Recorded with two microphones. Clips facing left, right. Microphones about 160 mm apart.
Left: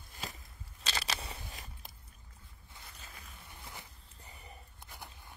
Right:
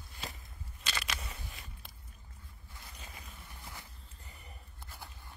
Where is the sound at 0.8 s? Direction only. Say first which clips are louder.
Left 2 dB; 30° left (ahead or behind).